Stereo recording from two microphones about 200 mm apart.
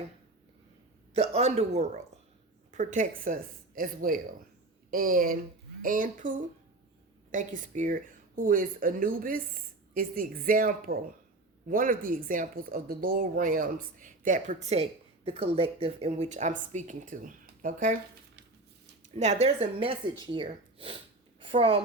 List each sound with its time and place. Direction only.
1.1 s a woman's voice: 30° right (ahead or behind)
19.0 s a woman's voice: 35° right (ahead or behind)